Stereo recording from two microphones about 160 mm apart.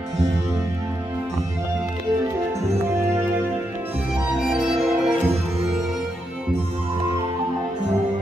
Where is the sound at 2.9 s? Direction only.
15° right (ahead or behind).